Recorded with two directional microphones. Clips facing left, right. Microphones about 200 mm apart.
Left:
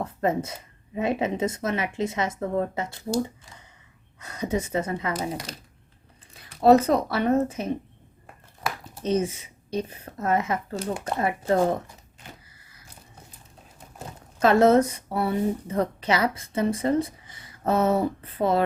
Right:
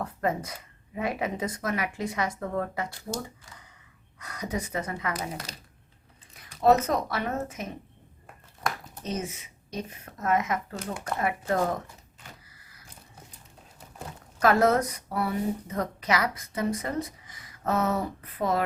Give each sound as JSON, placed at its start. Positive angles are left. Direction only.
{"t": 0.0, "sound": "a woman's voice", "side_deg": 25}
{"t": 6.3, "sound": "speech", "side_deg": 30}
{"t": 8.6, "sound": "a sound", "side_deg": 0}
{"t": 9.0, "sound": "a woman's voice", "side_deg": 30}
{"t": 14.3, "sound": "a woman's voice", "side_deg": 25}